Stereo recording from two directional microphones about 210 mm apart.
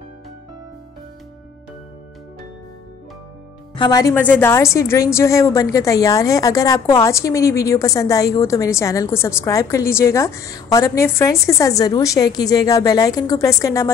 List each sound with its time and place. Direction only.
3.7 s a woman's voice: 20° left (ahead or behind)